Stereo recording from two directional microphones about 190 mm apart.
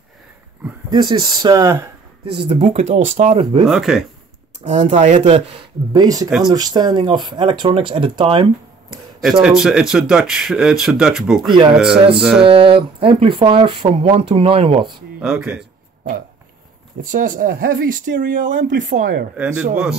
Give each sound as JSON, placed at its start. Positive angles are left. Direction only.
{"t": 0.8, "sound": "speech", "side_deg": -25}
{"t": 2.3, "sound": "speech", "side_deg": -30}
{"t": 3.6, "sound": "speech", "side_deg": 0}
{"t": 4.6, "sound": "speech", "side_deg": -30}
{"t": 9.4, "sound": "speech", "side_deg": -5}
{"t": 12.4, "sound": "speech", "side_deg": -30}
{"t": 15.1, "sound": "speech", "side_deg": -5}
{"t": 17.0, "sound": "speech", "side_deg": -45}
{"t": 18.0, "sound": "speech", "side_deg": -65}
{"t": 18.8, "sound": "speech", "side_deg": -45}
{"t": 19.3, "sound": "speech", "side_deg": -5}